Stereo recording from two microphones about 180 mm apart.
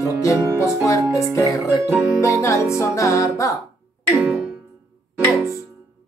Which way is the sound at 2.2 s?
15° left (ahead or behind).